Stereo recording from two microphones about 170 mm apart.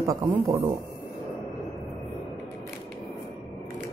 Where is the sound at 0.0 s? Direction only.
20° right (ahead or behind).